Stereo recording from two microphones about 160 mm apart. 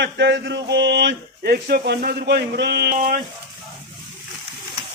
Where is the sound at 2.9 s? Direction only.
60° right (ahead or behind).